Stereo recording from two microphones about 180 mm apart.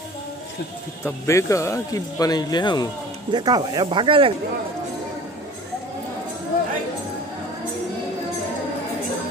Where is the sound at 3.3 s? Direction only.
25° right (ahead or behind).